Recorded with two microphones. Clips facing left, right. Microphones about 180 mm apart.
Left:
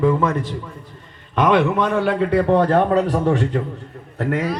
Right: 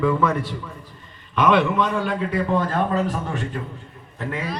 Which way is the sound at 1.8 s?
60° left (ahead or behind).